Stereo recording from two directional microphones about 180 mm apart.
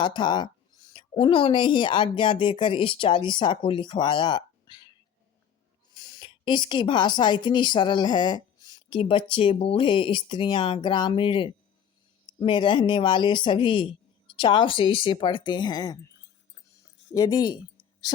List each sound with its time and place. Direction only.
0.0 s speech: 25° left (ahead or behind)
6.0 s speech: 25° left (ahead or behind)
17.2 s speech: 20° left (ahead or behind)